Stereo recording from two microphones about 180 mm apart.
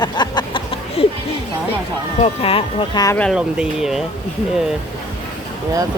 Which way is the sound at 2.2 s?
30° left (ahead or behind).